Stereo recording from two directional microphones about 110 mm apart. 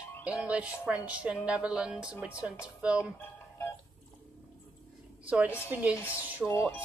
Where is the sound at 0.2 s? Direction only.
10° right (ahead or behind).